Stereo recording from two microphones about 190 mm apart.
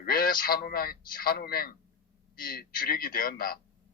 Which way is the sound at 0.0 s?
50° left (ahead or behind).